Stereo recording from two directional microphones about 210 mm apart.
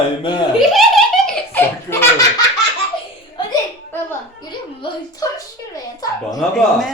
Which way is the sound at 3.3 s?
15° left (ahead or behind).